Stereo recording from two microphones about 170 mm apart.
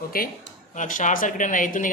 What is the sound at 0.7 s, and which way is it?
Speech, 50° left (ahead or behind).